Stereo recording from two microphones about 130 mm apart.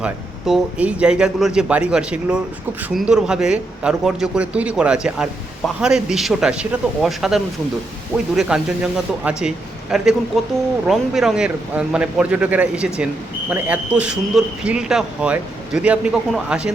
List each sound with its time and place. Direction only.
0.0 s speech: 5° right (ahead or behind)